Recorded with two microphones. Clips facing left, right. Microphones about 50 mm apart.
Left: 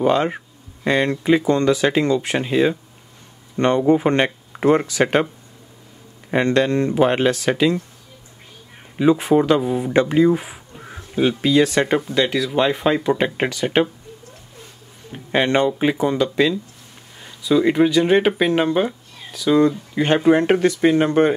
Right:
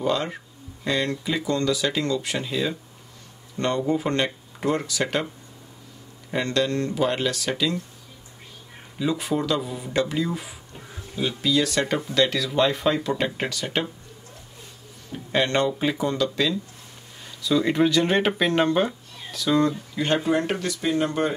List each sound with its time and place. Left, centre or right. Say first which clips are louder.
0.0 s speech: left 7 dB; left
6.3 s speech: left 7 dB; left
8.9 s speech: left 10 dB; left
12.0 s speech: left 3 dB; centre
15.1 s speech: left 5 dB; left
20.0 s speech: left 7 dB; left